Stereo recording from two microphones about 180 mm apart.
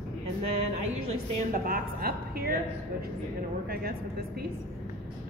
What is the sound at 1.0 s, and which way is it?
A woman's voice, 50° right (ahead or behind).